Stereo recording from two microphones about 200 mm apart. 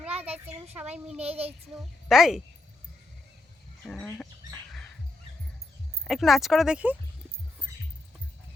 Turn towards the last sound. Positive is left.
turn(degrees=-5)  # may be behind; listen again after turning